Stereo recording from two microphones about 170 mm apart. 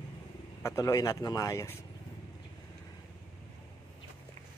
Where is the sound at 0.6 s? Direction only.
20° left (ahead or behind).